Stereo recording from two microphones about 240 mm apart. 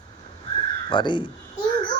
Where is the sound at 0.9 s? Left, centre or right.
Centre.